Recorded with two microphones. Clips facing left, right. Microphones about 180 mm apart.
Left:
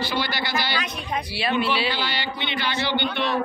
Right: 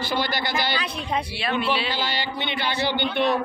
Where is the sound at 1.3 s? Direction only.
5° left (ahead or behind).